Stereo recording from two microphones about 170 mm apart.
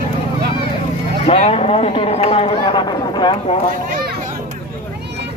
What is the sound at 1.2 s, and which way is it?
Speech, 35° left (ahead or behind).